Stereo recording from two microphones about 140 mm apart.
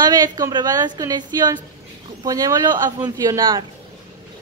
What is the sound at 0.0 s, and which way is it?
A woman's voice, 30° right (ahead or behind).